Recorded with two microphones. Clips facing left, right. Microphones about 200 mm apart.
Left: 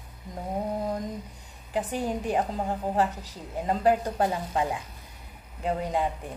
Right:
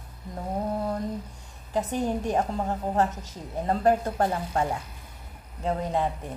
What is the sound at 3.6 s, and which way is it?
Speech, 15° left (ahead or behind).